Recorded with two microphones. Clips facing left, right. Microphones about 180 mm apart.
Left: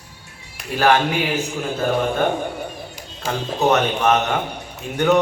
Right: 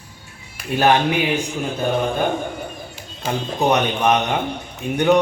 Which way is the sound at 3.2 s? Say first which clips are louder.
Even; 15° right (ahead or behind).